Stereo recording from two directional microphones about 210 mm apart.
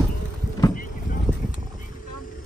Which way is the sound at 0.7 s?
40° left (ahead or behind).